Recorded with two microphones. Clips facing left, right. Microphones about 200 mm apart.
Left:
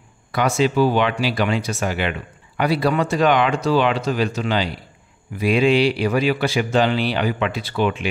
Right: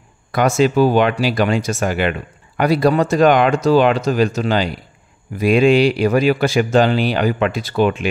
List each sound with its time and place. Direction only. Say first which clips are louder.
0.3 s speech: right 4 dB; 45° right (ahead or behind)